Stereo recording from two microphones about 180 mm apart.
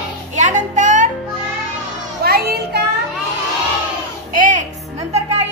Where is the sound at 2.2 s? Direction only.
60° right (ahead or behind).